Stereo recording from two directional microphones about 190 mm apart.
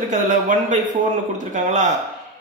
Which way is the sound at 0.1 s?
40° right (ahead or behind).